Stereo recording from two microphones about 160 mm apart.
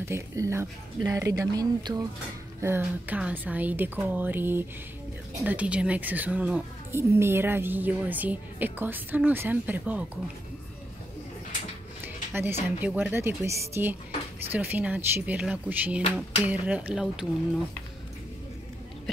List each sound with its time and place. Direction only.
0.0 s speech: 15° right (ahead or behind)
2.6 s speech: 15° right (ahead or behind)
12.0 s a sound: 15° right (ahead or behind)
12.8 s speech: 10° right (ahead or behind)